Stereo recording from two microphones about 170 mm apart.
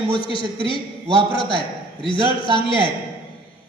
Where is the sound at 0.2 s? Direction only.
30° left (ahead or behind).